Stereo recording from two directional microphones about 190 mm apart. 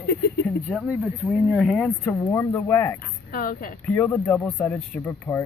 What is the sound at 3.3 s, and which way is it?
Speech, 50° left (ahead or behind).